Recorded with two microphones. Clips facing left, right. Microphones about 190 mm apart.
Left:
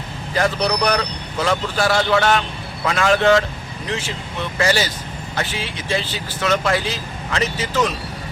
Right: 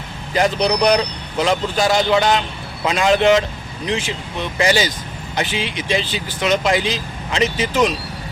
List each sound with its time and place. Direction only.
0.3 s a man's voice: 20° right (ahead or behind)